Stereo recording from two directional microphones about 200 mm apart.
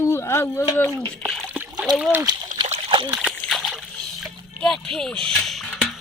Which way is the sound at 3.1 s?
Centre (ahead or behind).